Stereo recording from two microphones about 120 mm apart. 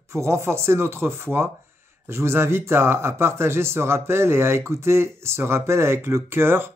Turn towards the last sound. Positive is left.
turn(degrees=-20)  # may be behind; listen again after turning